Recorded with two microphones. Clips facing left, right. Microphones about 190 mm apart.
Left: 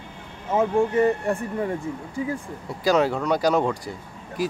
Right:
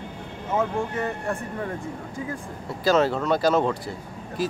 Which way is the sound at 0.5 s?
15° left (ahead or behind).